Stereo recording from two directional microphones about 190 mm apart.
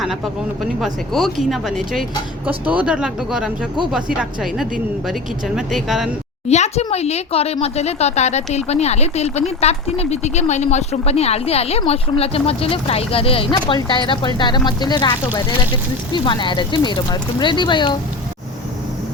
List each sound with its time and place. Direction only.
0.6 s speech: centre (ahead or behind)
6.5 s speech: 35° left (ahead or behind)